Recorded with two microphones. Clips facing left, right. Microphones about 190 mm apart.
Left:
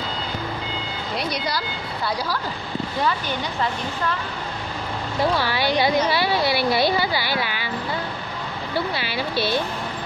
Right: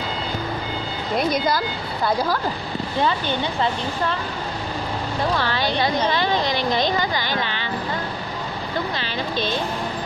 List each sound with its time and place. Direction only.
1.1 s speech: 50° right (ahead or behind)
3.0 s speech: 25° right (ahead or behind)
5.4 s speech: 10° left (ahead or behind)
8.7 s speech: 10° left (ahead or behind)